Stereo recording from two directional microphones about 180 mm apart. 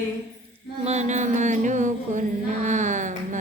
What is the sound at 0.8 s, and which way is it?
Music, 40° right (ahead or behind).